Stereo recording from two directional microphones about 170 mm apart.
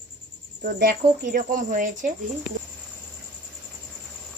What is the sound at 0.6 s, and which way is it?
Speech, 55° right (ahead or behind).